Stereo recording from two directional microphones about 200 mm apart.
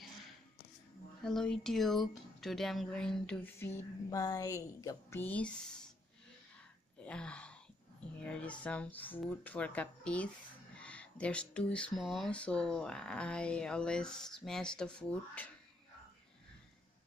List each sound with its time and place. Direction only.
1.2 s speech: 5° left (ahead or behind)
7.0 s a sound: 5° left (ahead or behind)
8.2 s speech: 5° left (ahead or behind)